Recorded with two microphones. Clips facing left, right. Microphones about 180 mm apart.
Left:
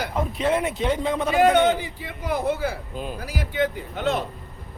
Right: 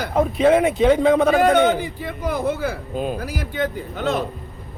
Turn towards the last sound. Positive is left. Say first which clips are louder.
# right 2 dB
turn(degrees=-45)  # may be behind; listen again after turning